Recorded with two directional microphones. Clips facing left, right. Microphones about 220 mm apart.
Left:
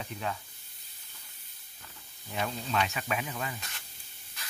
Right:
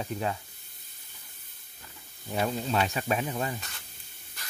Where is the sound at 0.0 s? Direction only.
35° right (ahead or behind).